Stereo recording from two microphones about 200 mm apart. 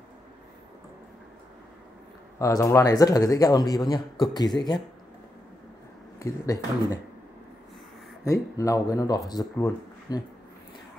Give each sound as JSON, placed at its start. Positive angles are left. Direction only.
{"t": 2.3, "sound": "speech", "side_deg": 15}
{"t": 6.1, "sound": "speech", "side_deg": 15}
{"t": 8.2, "sound": "speech", "side_deg": 15}